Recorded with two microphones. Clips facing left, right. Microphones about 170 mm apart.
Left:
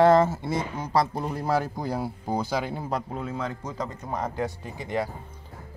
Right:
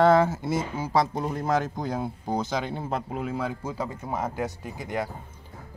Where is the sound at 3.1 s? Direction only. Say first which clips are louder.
Right 2 dB; 10° right (ahead or behind).